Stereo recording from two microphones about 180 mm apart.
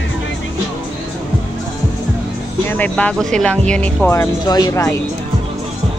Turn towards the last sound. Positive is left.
turn(degrees=15)  # may be behind; listen again after turning